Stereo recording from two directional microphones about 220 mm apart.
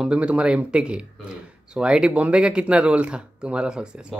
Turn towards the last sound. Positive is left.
turn(degrees=-5)  # may be behind; listen again after turning